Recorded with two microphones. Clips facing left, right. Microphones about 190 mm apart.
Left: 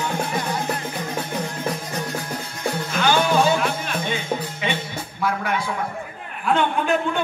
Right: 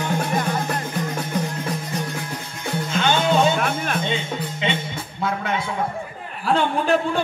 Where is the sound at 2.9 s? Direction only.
25° right (ahead or behind).